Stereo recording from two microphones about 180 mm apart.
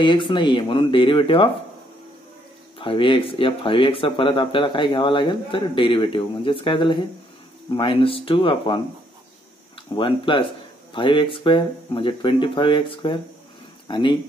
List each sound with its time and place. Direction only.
0.0 s speech: 25° left (ahead or behind)
2.8 s speech: 30° left (ahead or behind)
9.9 s speech: 25° left (ahead or behind)